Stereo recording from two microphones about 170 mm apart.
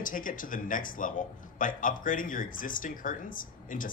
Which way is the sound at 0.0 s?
55° left (ahead or behind).